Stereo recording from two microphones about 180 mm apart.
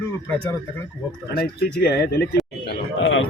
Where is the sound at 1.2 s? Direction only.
60° left (ahead or behind).